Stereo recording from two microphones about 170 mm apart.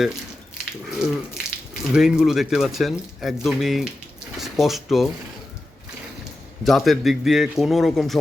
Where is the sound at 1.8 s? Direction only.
5° right (ahead or behind).